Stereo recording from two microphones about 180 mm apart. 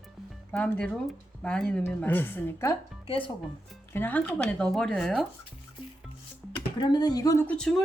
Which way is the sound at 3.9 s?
10° left (ahead or behind).